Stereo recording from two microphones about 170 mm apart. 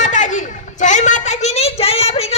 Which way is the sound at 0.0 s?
45° left (ahead or behind).